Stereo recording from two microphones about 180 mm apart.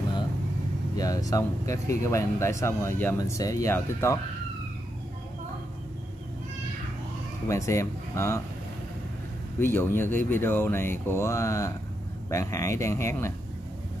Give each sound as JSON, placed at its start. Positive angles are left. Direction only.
{"t": 0.9, "sound": "speech", "side_deg": 20}
{"t": 7.4, "sound": "speech", "side_deg": 15}
{"t": 9.6, "sound": "speech", "side_deg": 15}